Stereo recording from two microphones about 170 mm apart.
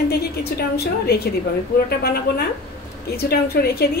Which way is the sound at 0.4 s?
70° left (ahead or behind).